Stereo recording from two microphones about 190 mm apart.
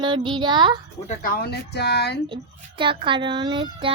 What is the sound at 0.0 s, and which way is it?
Speech, 25° right (ahead or behind).